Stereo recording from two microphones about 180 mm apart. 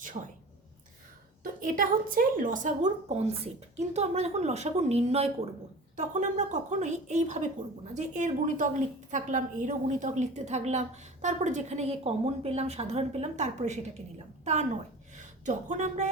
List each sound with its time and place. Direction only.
0.1 s a woman's voice: 35° right (ahead or behind)
1.6 s a woman's voice: 50° right (ahead or behind)